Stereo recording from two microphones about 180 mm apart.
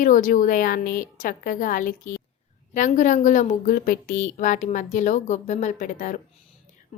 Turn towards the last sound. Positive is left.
turn(degrees=45)  # may be behind; listen again after turning